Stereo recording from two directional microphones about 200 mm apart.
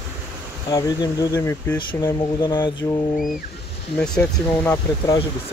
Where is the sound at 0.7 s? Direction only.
20° left (ahead or behind).